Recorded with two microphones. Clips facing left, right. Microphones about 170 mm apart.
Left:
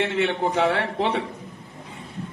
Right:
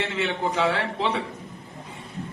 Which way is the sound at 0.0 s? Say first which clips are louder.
Left 4 dB; 55° left (ahead or behind).